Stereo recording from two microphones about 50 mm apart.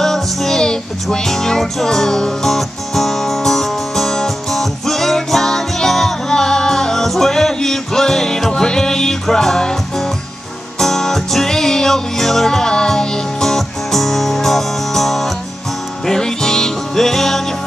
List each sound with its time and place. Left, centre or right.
0.0 s music: centre